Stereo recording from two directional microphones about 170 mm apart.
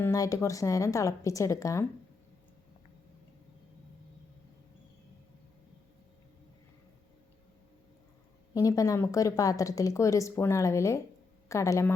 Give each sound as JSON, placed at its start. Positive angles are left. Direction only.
{"t": 0.0, "sound": "speech", "side_deg": 20}
{"t": 8.5, "sound": "speech", "side_deg": 20}